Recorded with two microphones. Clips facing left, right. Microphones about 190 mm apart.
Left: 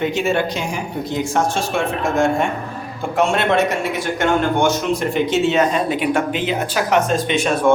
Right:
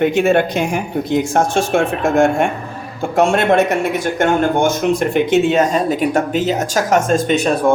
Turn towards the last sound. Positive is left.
turn(degrees=-35)  # may be behind; listen again after turning